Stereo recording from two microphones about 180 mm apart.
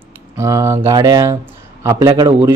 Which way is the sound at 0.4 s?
15° right (ahead or behind).